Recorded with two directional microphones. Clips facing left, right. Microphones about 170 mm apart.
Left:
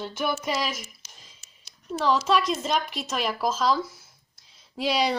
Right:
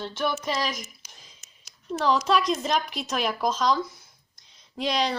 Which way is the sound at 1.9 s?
Centre (ahead or behind).